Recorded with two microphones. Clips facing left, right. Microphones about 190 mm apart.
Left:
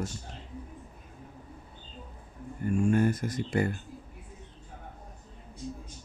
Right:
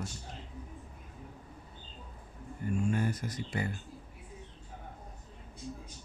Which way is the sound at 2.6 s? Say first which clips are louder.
Left 6 dB; 50° left (ahead or behind).